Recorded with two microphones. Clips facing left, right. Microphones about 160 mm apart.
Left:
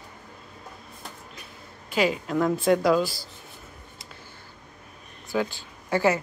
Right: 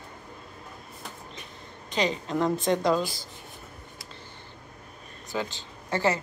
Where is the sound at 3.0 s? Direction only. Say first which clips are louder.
Left 4 dB; 20° right (ahead or behind).